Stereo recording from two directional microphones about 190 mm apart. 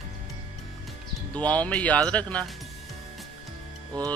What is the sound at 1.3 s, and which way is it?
Speech, 5° left (ahead or behind).